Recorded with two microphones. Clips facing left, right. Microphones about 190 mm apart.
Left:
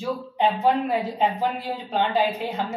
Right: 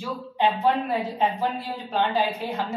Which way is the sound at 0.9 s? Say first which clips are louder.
Left 2 dB; 15° left (ahead or behind).